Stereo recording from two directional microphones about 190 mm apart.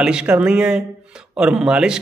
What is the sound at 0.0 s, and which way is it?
Speech, 5° right (ahead or behind).